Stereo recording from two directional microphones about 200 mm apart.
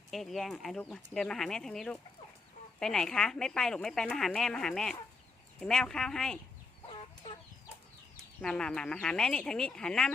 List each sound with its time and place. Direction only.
0.1 s speech: centre (ahead or behind)
6.9 s chicken: 25° left (ahead or behind)
8.4 s speech: 5° left (ahead or behind)